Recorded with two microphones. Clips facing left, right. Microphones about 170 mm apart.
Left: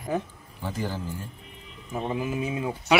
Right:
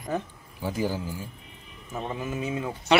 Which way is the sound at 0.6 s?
10° right (ahead or behind).